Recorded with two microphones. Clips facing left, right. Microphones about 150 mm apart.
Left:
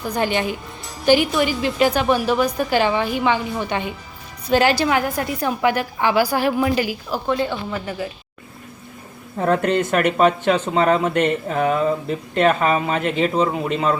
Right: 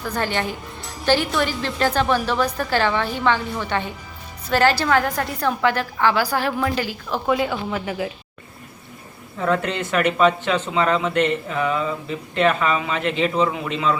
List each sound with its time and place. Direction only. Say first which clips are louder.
0.0 s a woman's voice: left 3 dB; 15° left (ahead or behind)
0.8 s music: even; centre (ahead or behind)
1.0 s a woman's voice: left 4 dB; 15° left (ahead or behind)
7.3 s speech: right 1 dB; 5° right (ahead or behind)
9.4 s speech: left 4 dB; 45° left (ahead or behind)